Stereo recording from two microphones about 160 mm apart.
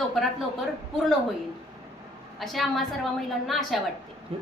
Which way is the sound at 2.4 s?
Centre (ahead or behind).